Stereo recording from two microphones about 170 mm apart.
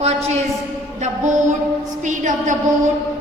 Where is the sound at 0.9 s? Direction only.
45° right (ahead or behind).